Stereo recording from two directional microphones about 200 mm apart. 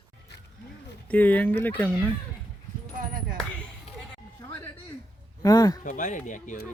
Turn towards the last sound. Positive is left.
turn(degrees=40)  # may be behind; listen again after turning